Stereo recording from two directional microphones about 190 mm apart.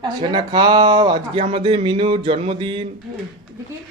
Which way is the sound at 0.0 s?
25° right (ahead or behind).